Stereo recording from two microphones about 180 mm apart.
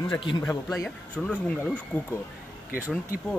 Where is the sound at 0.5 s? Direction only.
15° left (ahead or behind).